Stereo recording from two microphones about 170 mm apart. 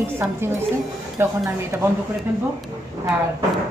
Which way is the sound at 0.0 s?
15° right (ahead or behind).